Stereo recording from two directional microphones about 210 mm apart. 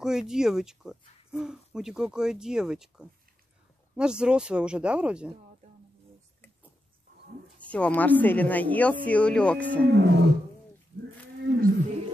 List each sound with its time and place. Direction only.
0.0 s speech: centre (ahead or behind)
7.5 s a woman's voice: 5° left (ahead or behind)
9.9 s roaring cats: 50° right (ahead or behind)
11.4 s wild animals: 50° right (ahead or behind)